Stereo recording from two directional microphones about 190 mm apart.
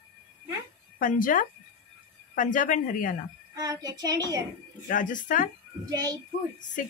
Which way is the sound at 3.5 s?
20° right (ahead or behind).